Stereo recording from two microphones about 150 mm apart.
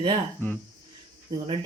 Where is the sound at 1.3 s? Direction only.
35° right (ahead or behind).